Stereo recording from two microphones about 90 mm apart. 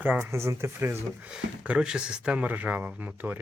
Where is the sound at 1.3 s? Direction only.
15° right (ahead or behind).